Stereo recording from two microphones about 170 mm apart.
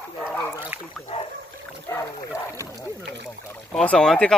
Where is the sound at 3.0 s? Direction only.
90° right.